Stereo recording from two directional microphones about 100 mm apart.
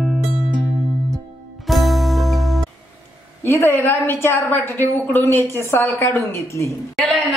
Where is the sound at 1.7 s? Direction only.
Centre (ahead or behind).